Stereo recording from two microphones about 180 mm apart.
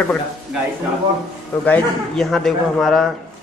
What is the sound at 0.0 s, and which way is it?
Speech, 5° left (ahead or behind).